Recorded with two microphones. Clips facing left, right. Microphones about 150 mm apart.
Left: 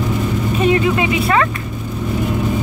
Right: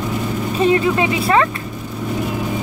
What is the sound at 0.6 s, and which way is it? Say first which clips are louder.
Speech: right 1 dB; 30° right (ahead or behind).